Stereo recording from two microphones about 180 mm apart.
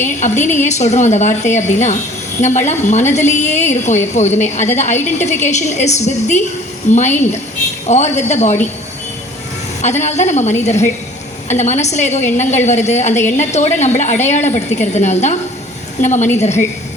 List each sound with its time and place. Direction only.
0.0 s a woman's voice: 40° left (ahead or behind)
9.8 s a woman's voice: 40° left (ahead or behind)